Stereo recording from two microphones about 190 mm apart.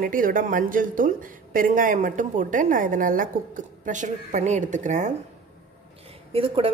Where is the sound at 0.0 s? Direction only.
45° right (ahead or behind).